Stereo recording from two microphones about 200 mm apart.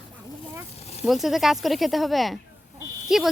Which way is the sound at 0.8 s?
30° left (ahead or behind).